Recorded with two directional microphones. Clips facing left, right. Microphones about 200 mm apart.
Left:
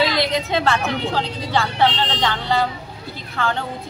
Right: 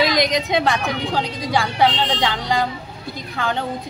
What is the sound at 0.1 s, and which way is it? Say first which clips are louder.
Speech: right 2 dB; 15° right (ahead or behind).